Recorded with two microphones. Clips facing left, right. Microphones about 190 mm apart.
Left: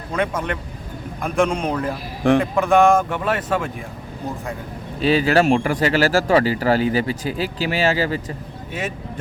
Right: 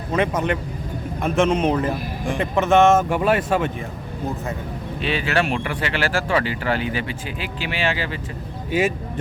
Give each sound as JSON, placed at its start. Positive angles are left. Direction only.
{"t": 0.1, "sound": "speech", "side_deg": -5}
{"t": 4.9, "sound": "speech", "side_deg": 40}